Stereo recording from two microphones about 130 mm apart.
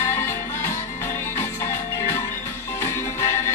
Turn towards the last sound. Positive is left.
turn(degrees=20)  # may be behind; listen again after turning